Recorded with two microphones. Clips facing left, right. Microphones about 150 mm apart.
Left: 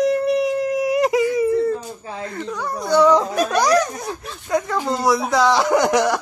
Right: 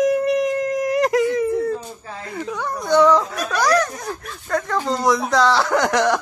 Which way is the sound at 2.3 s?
10° right (ahead or behind).